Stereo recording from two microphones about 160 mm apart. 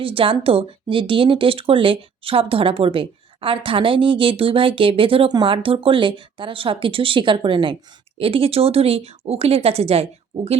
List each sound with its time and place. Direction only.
0.0 s speech: 35° right (ahead or behind)